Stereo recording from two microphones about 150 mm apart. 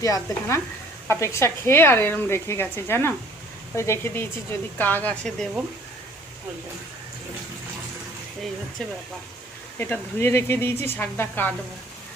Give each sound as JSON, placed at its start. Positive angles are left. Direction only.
{"t": 0.0, "sound": "stir", "side_deg": 20}
{"t": 1.0, "sound": "speech", "side_deg": 15}
{"t": 9.7, "sound": "speech", "side_deg": 15}